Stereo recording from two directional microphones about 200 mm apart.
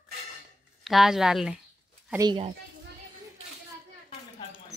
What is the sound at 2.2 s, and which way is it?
Speech, 25° right (ahead or behind).